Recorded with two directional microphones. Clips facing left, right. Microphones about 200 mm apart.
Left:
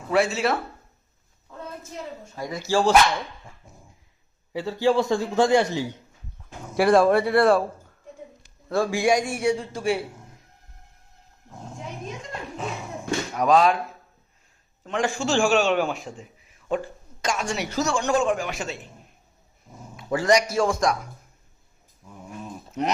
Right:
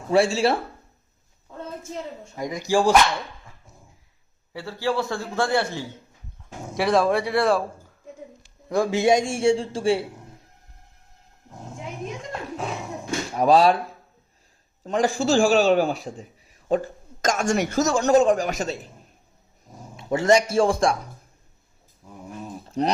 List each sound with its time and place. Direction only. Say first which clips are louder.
0.1 s a man's voice: right 3 dB; 30° right (ahead or behind)
2.3 s speech: right 2 dB; 15° right (ahead or behind)
4.5 s a man's voice: left 4 dB; 20° left (ahead or behind)
6.7 s speech: left 3 dB; centre (ahead or behind)
8.7 s a man's voice: right 2 dB; 20° right (ahead or behind)
13.3 s a man's voice: right 2 dB; 30° right (ahead or behind)
14.8 s a man's voice: right 4 dB; 35° right (ahead or behind)
20.0 s a man's voice: right 2 dB; 25° right (ahead or behind)
22.8 s a man's voice: right 3 dB; 35° right (ahead or behind)